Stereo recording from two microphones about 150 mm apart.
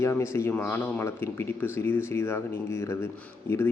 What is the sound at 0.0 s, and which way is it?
A man's voice, 20° left (ahead or behind).